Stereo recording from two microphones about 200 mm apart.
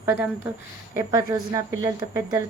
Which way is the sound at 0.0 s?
10° right (ahead or behind).